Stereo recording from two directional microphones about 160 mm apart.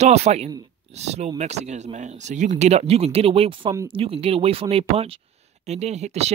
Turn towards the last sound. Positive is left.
turn(degrees=-45)  # may be behind; listen again after turning